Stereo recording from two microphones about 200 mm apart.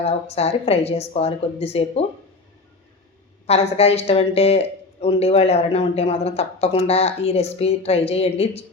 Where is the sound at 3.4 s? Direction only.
30° left (ahead or behind).